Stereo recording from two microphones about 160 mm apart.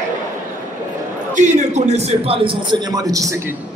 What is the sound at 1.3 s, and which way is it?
A man's voice, 50° right (ahead or behind).